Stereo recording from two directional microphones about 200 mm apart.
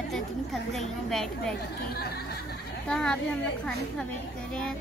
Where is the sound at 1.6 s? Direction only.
50° left (ahead or behind).